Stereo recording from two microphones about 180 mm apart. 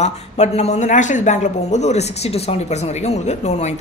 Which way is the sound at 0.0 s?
40° left (ahead or behind).